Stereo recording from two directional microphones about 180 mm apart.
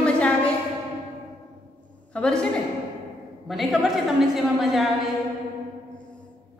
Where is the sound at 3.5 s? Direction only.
Centre (ahead or behind).